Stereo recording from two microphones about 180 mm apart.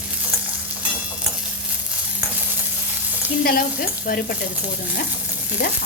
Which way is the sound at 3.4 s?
55° left (ahead or behind).